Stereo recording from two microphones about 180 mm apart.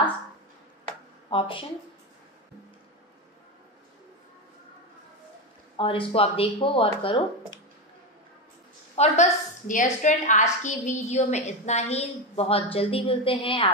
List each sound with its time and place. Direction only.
1.3 s speech: 30° left (ahead or behind)
5.8 s a woman's voice: 30° left (ahead or behind)
8.9 s a woman's voice: 35° left (ahead or behind)